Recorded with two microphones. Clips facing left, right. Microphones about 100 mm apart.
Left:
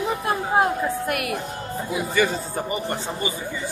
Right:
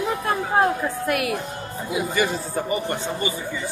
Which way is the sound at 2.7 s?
25° left (ahead or behind).